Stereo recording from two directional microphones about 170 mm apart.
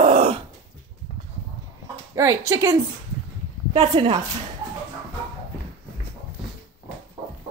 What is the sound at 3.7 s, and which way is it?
Speech, 25° right (ahead or behind).